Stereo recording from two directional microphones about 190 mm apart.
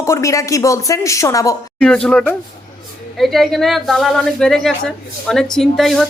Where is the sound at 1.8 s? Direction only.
5° left (ahead or behind).